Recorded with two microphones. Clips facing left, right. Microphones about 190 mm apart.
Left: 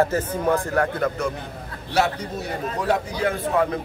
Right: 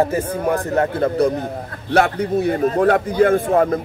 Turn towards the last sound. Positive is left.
turn(degrees=-50)  # may be behind; listen again after turning